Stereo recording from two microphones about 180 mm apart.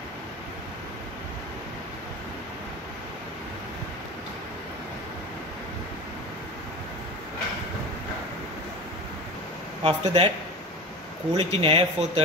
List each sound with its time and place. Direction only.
9.8 s speech: 30° right (ahead or behind)
11.3 s speech: 35° right (ahead or behind)